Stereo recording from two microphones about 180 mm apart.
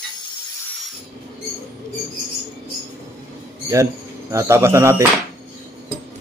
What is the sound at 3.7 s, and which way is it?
Speech, 15° right (ahead or behind).